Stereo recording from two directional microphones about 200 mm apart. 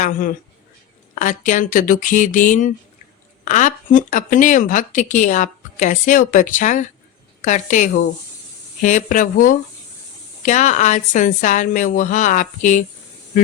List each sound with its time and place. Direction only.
0.0 s speech: 40° left (ahead or behind)